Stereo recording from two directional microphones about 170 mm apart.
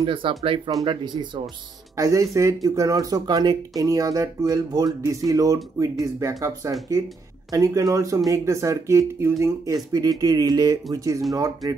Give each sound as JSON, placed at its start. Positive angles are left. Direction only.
{"t": 0.0, "sound": "speech", "side_deg": -30}